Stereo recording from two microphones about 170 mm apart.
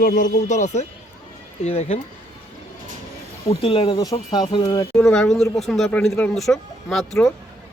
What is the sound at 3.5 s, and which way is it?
Speech, 30° left (ahead or behind).